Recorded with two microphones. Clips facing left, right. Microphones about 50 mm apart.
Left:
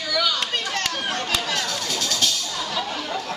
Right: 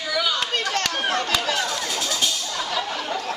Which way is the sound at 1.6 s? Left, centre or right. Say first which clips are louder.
Right 1 dB; centre.